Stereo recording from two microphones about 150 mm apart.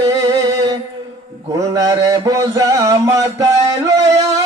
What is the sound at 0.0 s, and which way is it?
Music, 25° right (ahead or behind).